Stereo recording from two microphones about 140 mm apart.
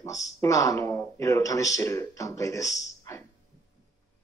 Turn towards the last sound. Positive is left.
turn(degrees=20)  # may be behind; listen again after turning